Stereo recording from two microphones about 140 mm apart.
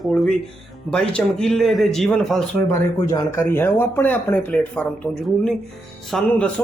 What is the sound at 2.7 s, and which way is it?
Speech, 25° left (ahead or behind).